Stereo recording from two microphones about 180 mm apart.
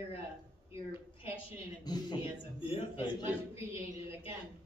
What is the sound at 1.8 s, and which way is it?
A man's voice, 25° left (ahead or behind).